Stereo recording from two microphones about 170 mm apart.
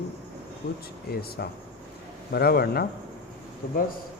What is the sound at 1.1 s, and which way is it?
Speech, 70° left (ahead or behind).